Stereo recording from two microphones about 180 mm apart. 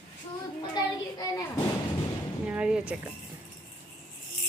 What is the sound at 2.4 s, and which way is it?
Speech, 5° right (ahead or behind).